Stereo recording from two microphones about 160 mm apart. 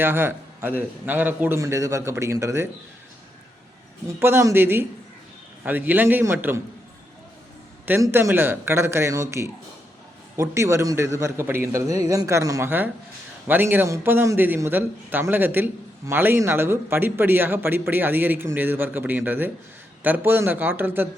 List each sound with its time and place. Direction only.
0.0 s a man's voice: 15° right (ahead or behind)
4.2 s a man's voice: 15° right (ahead or behind)
7.9 s a man's voice: 15° right (ahead or behind)